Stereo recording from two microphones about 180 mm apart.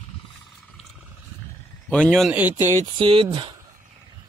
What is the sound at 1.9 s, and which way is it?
Speech, 5° left (ahead or behind).